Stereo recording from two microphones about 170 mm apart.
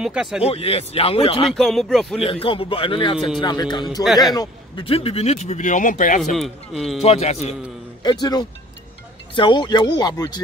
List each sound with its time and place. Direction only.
0.0 s a man's voice: 5° right (ahead or behind)
0.4 s speech: 35° left (ahead or behind)
1.6 s a man's voice: centre (ahead or behind)
2.1 s speech: 35° left (ahead or behind)
4.0 s a man's voice: centre (ahead or behind)
4.4 s speech: 30° left (ahead or behind); by 6.3 s 50° left (ahead or behind)
6.3 s a man's voice: centre (ahead or behind)
7.0 s speech: 40° left (ahead or behind)
8.0 s speech: 25° left (ahead or behind)